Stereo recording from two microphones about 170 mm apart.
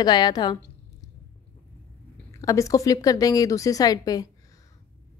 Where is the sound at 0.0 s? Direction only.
25° left (ahead or behind).